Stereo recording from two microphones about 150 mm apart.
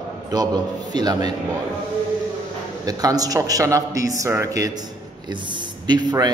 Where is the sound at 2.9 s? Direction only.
25° right (ahead or behind).